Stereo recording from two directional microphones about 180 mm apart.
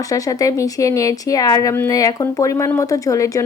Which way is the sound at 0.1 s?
20° left (ahead or behind).